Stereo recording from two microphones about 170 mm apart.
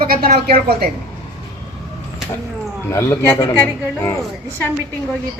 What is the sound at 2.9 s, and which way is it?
Speech, 15° left (ahead or behind).